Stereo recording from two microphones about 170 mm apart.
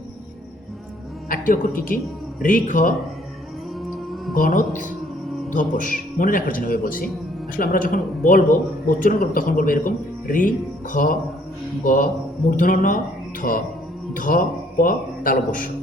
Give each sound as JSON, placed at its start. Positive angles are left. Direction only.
{"t": 1.3, "sound": "speech", "side_deg": 55}
{"t": 4.4, "sound": "speech", "side_deg": 50}
{"t": 12.5, "sound": "a man's voice", "side_deg": 50}